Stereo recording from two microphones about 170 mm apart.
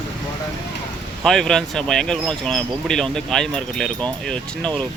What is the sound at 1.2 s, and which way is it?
Speech, centre (ahead or behind).